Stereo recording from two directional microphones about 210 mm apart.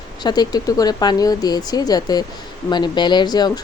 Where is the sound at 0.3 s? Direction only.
20° left (ahead or behind).